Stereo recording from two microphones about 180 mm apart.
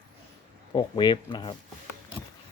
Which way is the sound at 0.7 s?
25° left (ahead or behind).